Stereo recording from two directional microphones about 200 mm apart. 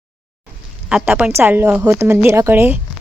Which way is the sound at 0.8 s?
5° right (ahead or behind).